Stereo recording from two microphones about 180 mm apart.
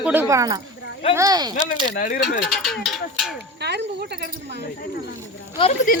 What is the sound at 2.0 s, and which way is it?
Speech, 50° left (ahead or behind).